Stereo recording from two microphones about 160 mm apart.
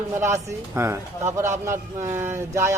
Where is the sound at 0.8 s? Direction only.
15° right (ahead or behind).